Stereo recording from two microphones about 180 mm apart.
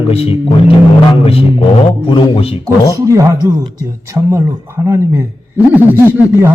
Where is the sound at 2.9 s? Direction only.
15° right (ahead or behind).